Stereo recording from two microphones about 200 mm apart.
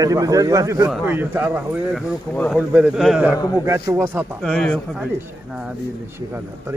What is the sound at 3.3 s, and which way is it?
Speech, 20° left (ahead or behind).